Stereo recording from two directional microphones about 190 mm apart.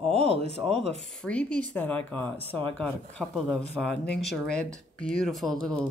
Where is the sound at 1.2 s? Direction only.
5° left (ahead or behind).